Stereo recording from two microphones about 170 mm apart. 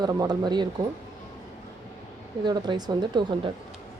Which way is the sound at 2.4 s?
25° right (ahead or behind).